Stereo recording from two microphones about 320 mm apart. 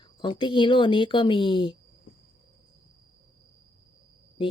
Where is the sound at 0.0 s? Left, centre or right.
Centre.